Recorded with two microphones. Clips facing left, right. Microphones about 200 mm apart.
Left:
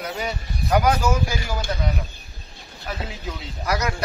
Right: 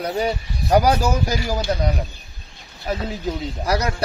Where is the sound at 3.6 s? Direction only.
30° right (ahead or behind).